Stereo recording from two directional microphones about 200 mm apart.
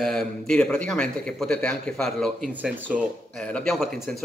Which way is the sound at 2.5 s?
10° right (ahead or behind).